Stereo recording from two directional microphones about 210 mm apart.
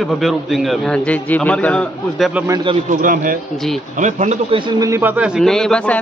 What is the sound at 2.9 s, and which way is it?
Speech, 40° right (ahead or behind).